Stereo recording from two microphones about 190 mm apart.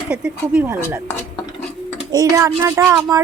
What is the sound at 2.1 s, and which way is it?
Speech, 15° right (ahead or behind).